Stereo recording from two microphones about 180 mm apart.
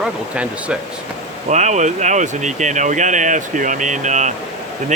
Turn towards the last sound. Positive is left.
turn(degrees=-40)  # may be behind; listen again after turning